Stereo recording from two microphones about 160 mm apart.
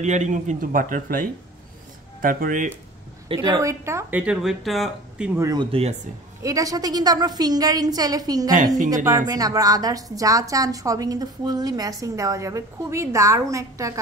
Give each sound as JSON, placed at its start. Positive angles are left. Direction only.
{"t": 0.0, "sound": "speech", "side_deg": -45}
{"t": 3.3, "sound": "speech", "side_deg": -25}
{"t": 5.4, "sound": "a woman's voice", "side_deg": -25}
{"t": 5.7, "sound": "speech", "side_deg": -40}
{"t": 6.4, "sound": "a woman's voice", "side_deg": -20}